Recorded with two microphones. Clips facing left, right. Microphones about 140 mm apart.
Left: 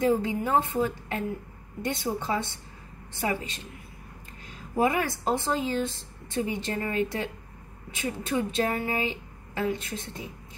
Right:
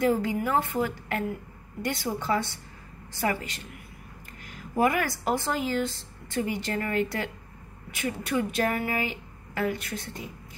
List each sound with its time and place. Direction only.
0.0 s speech: 25° left (ahead or behind)
4.7 s speech: 25° left (ahead or behind)